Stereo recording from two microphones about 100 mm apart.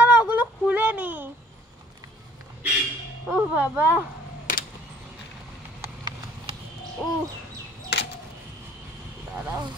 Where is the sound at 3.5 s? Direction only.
15° right (ahead or behind).